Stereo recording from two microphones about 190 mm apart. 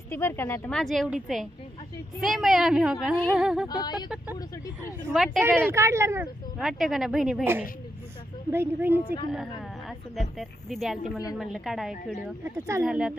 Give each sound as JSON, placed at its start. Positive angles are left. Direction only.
{"t": 0.1, "sound": "speech", "side_deg": 15}
{"t": 3.6, "sound": "speech", "side_deg": 20}
{"t": 5.1, "sound": "speech", "side_deg": 0}
{"t": 5.4, "sound": "speech", "side_deg": -10}
{"t": 6.6, "sound": "speech", "side_deg": 0}
{"t": 8.5, "sound": "speech", "side_deg": -10}
{"t": 9.3, "sound": "a sound", "side_deg": 0}
{"t": 10.3, "sound": "speech", "side_deg": 0}